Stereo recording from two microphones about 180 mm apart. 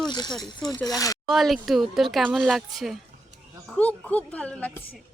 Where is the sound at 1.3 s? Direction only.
Centre (ahead or behind).